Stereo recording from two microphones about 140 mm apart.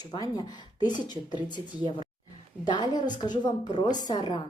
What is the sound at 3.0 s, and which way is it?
A woman's voice, 30° left (ahead or behind).